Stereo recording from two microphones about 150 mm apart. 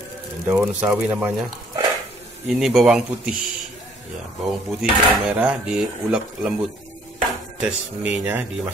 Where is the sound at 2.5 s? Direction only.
Centre (ahead or behind).